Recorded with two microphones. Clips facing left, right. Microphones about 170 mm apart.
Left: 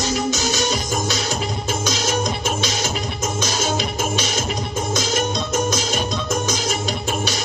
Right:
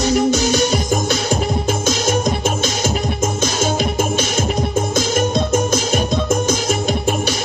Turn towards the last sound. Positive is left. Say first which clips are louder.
# right 5 dB
turn(degrees=-50)  # may be behind; listen again after turning